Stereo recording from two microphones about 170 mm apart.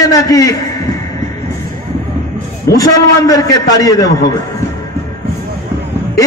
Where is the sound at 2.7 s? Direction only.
20° left (ahead or behind).